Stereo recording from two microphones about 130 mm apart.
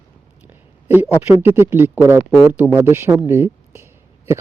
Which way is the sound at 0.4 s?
15° right (ahead or behind).